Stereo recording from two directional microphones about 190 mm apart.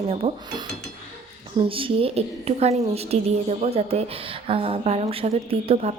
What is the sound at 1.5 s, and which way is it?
A woman's voice, 30° right (ahead or behind).